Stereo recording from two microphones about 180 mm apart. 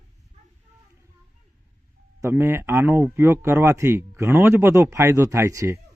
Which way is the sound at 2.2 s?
15° right (ahead or behind).